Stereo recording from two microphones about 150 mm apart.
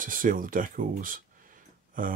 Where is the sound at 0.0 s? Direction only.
65° right (ahead or behind).